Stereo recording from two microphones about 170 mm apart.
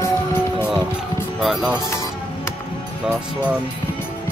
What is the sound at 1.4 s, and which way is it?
Speech, 5° right (ahead or behind).